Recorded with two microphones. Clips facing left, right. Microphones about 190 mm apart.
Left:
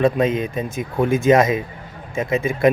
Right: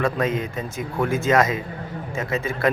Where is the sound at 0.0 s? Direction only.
20° left (ahead or behind).